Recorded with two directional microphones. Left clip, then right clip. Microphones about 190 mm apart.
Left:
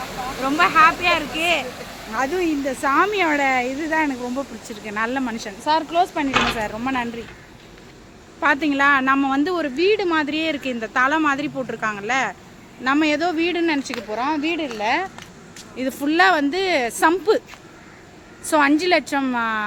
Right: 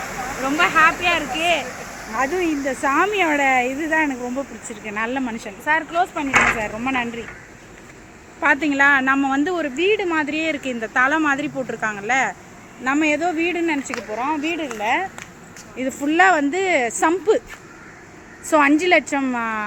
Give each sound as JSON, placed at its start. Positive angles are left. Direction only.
{"t": 0.4, "sound": "a woman's voice", "side_deg": 10}
{"t": 5.9, "sound": "speech", "side_deg": 30}
{"t": 6.6, "sound": "a woman's voice", "side_deg": 5}
{"t": 8.4, "sound": "a woman's voice", "side_deg": 10}
{"t": 16.1, "sound": "a woman's voice", "side_deg": 5}
{"t": 18.4, "sound": "a woman's voice", "side_deg": 5}